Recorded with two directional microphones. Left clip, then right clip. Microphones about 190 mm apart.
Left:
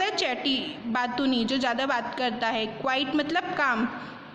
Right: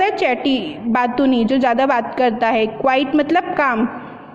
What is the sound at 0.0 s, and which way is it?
A woman's voice, 25° right (ahead or behind).